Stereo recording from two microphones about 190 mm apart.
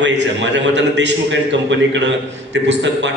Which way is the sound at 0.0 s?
65° right (ahead or behind).